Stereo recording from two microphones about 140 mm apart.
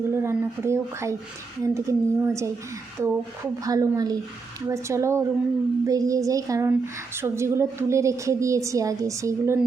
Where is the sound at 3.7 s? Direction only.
25° right (ahead or behind).